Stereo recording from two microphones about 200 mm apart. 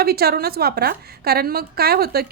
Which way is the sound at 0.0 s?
50° right (ahead or behind).